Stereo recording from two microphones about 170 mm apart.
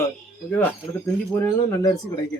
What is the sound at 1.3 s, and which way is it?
Speech, 15° left (ahead or behind).